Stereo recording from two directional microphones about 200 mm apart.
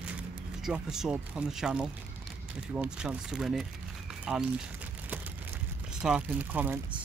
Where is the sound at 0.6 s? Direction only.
Centre (ahead or behind).